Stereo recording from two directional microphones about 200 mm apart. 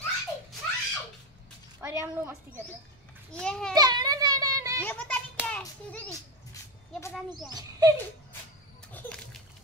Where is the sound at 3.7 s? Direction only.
20° right (ahead or behind).